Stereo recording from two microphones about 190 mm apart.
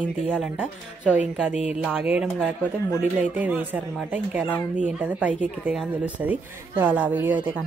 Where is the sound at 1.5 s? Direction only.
35° left (ahead or behind).